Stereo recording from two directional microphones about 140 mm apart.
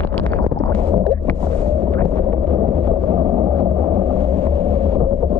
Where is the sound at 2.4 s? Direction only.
35° right (ahead or behind).